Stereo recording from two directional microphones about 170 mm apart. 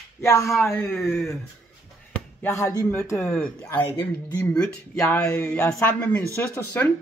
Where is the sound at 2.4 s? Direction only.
15° left (ahead or behind).